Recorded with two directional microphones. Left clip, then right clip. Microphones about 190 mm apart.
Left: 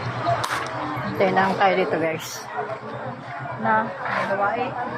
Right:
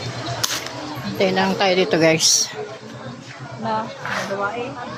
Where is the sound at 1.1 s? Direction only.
40° right (ahead or behind); by 2.2 s 55° right (ahead or behind).